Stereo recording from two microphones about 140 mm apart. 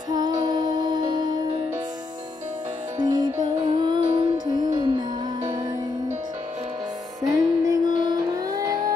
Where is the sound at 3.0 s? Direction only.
30° right (ahead or behind).